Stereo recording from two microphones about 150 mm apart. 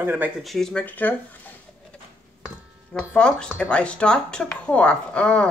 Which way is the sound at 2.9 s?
5° left (ahead or behind).